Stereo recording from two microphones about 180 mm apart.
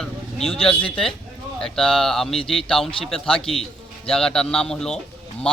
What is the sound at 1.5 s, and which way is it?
Speech, centre (ahead or behind).